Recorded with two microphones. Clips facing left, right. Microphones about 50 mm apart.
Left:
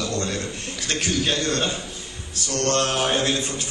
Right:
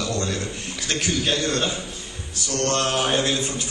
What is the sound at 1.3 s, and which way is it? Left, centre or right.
A man's voice, right.